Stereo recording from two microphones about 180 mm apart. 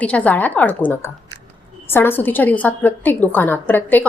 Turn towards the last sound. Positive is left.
turn(degrees=10)  # may be behind; listen again after turning